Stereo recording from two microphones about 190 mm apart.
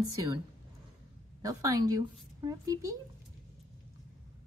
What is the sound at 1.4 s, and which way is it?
A woman's voice, 20° right (ahead or behind).